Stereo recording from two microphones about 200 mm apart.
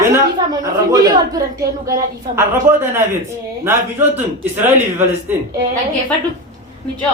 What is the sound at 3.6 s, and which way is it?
A woman's voice, 10° right (ahead or behind).